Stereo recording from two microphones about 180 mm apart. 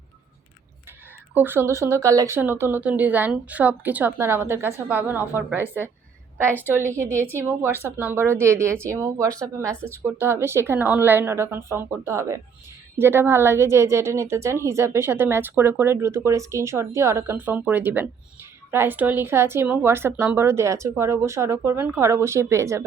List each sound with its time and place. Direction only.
1.3 s a woman's voice: 10° right (ahead or behind)
6.3 s a woman's voice: 10° right (ahead or behind)